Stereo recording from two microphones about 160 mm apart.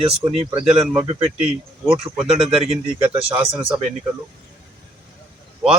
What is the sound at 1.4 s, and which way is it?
Speech, 5° right (ahead or behind).